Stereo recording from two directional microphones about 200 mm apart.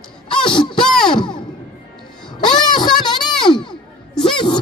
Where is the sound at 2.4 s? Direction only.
20° left (ahead or behind).